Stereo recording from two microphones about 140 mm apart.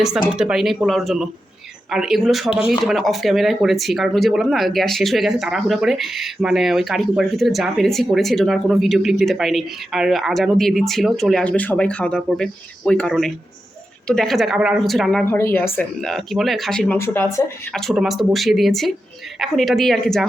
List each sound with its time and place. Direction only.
0.3 s speech: 5° right (ahead or behind)
15.2 s speech: 15° left (ahead or behind)
16.0 s speech: centre (ahead or behind)
17.0 s speech: 20° left (ahead or behind)
17.7 s speech: 5° left (ahead or behind)